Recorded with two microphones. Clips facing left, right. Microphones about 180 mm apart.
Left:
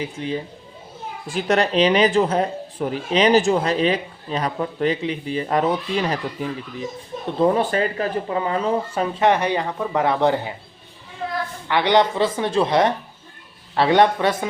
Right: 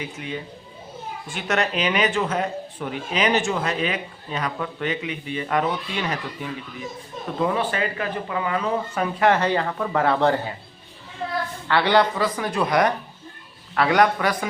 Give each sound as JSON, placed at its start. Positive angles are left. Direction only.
{"t": 0.0, "sound": "speech", "side_deg": 30}
{"t": 11.7, "sound": "speech", "side_deg": 15}